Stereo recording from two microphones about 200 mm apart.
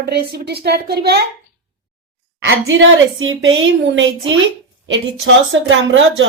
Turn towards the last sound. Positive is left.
turn(degrees=-70)  # may be behind; listen again after turning